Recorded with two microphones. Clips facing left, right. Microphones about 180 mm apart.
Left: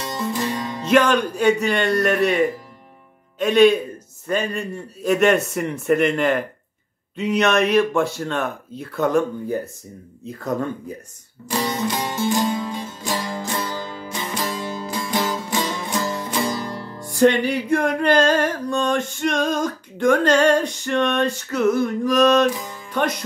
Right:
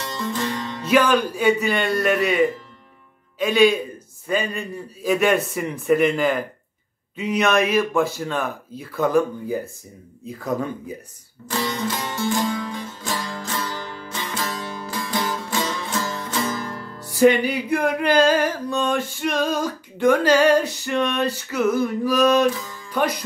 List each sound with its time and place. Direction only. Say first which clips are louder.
0.0 s music: left 2 dB; 15° left (ahead or behind)
0.8 s music: left 1 dB; centre (ahead or behind)
11.4 s music: left 2 dB; 15° left (ahead or behind)
17.1 s music: even; 5° right (ahead or behind)
22.5 s music: left 1 dB; 15° left (ahead or behind)